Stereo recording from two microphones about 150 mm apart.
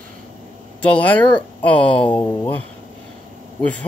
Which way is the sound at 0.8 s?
10° left (ahead or behind).